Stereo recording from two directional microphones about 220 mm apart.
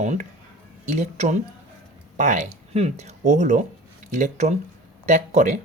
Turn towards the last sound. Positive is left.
turn(degrees=-35)  # may be behind; listen again after turning